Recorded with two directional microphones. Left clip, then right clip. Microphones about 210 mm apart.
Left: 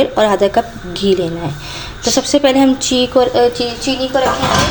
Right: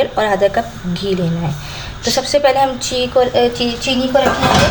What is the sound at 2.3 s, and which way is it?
A woman's voice, 25° left (ahead or behind).